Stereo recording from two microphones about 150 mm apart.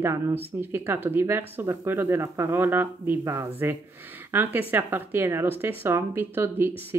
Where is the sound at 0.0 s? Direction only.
15° right (ahead or behind).